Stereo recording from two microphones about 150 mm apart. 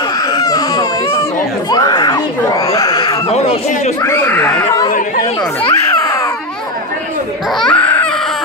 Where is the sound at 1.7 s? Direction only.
25° left (ahead or behind).